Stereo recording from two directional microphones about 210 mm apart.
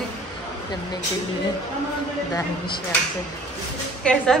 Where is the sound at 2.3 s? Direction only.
20° left (ahead or behind).